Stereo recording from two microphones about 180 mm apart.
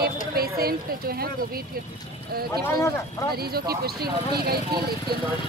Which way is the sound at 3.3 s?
60° right (ahead or behind).